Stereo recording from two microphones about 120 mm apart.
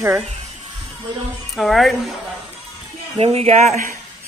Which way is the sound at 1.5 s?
Centre (ahead or behind).